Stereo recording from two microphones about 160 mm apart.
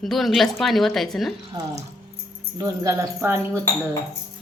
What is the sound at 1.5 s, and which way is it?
Speech, 25° right (ahead or behind).